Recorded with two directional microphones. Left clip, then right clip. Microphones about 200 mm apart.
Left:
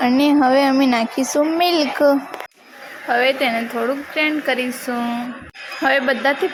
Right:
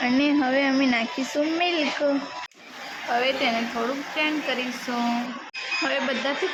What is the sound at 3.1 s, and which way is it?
A woman's voice, 20° left (ahead or behind).